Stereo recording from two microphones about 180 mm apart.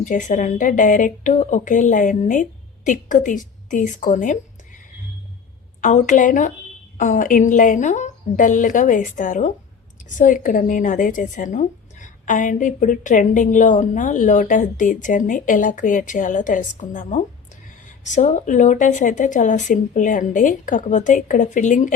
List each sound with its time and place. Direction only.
0.0 s a woman's voice: 45° left (ahead or behind)
5.8 s a woman's voice: 45° left (ahead or behind)